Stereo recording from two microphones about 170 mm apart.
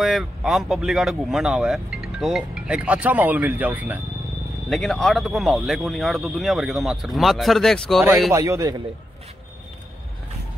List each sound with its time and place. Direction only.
0.0 s speech: centre (ahead or behind)
4.6 s speech: centre (ahead or behind)
8.3 s a man's voice: 20° right (ahead or behind)